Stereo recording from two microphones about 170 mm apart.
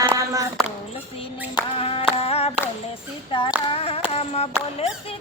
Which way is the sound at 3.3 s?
30° left (ahead or behind).